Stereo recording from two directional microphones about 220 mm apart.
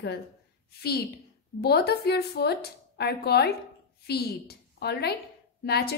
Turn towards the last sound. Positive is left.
turn(degrees=45)  # may be behind; listen again after turning